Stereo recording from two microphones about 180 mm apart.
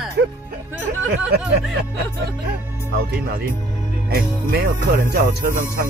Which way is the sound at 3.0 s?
60° right (ahead or behind).